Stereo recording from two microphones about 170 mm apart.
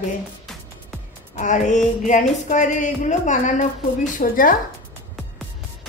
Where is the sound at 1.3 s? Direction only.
45° left (ahead or behind).